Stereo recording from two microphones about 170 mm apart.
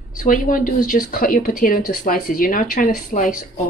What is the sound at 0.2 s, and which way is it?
Speech, 55° left (ahead or behind).